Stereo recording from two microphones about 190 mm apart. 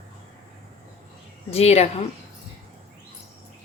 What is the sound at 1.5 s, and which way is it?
Speech, 35° left (ahead or behind).